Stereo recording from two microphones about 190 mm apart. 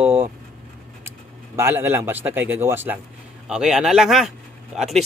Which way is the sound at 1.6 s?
10° right (ahead or behind).